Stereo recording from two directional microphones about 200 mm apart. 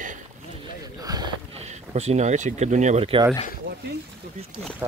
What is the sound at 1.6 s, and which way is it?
Speech, 35° right (ahead or behind).